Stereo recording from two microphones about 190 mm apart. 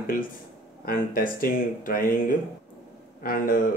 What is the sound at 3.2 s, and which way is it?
Speech, 50° left (ahead or behind).